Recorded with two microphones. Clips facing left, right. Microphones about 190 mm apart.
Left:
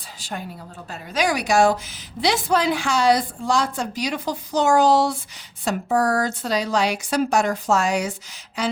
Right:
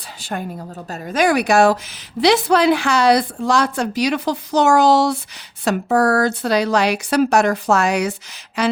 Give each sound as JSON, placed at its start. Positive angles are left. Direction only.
{"t": 0.2, "sound": "a woman's voice", "side_deg": -55}